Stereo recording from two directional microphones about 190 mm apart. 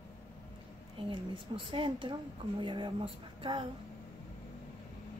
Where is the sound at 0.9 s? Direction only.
25° right (ahead or behind).